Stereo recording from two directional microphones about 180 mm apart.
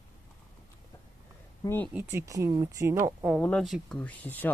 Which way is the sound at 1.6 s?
10° left (ahead or behind).